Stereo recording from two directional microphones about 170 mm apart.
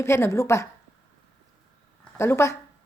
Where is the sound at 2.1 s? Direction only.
15° left (ahead or behind).